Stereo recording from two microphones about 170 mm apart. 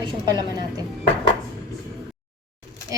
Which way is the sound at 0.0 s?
25° right (ahead or behind).